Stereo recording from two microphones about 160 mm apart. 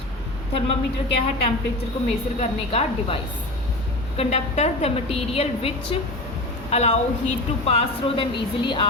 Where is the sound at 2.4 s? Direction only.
35° left (ahead or behind).